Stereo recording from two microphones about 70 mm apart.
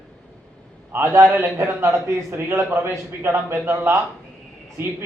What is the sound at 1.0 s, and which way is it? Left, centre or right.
A man's voice, right.